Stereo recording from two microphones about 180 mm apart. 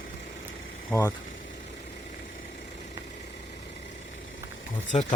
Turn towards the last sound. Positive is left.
turn(degrees=35)  # may be behind; listen again after turning